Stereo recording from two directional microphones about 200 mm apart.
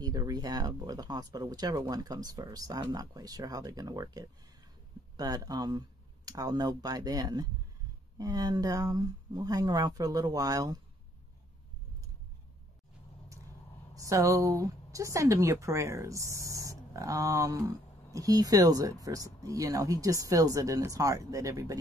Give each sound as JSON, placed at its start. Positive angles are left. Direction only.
{"t": 0.0, "sound": "speech", "side_deg": -20}
{"t": 13.9, "sound": "speech", "side_deg": -15}